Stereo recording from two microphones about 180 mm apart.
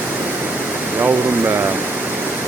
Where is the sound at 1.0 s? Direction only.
10° right (ahead or behind).